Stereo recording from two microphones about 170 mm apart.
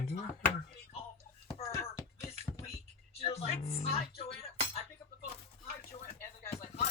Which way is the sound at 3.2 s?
35° left (ahead or behind).